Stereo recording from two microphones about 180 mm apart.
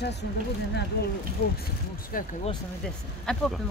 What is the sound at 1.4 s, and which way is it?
Speech, 55° left (ahead or behind).